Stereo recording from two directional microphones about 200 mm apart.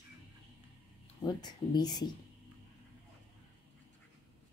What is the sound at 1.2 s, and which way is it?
Speech, 20° left (ahead or behind).